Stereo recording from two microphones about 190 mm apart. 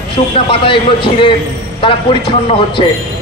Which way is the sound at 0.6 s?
25° left (ahead or behind).